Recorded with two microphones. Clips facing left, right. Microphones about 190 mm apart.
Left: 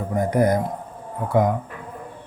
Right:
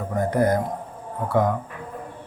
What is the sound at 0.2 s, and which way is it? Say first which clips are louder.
Speech: left 1 dB; 15° left (ahead or behind).